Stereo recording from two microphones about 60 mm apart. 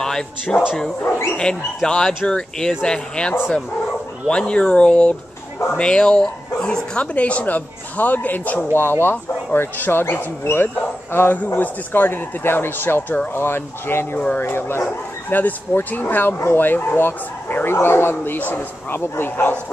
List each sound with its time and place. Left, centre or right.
0.0 s speech: centre; by 14.0 s left
14.1 s speech: left
14.4 s speech: left